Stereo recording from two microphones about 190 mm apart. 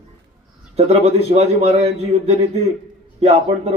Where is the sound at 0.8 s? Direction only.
35° right (ahead or behind).